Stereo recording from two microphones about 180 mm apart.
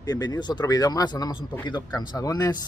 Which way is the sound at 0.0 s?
20° left (ahead or behind).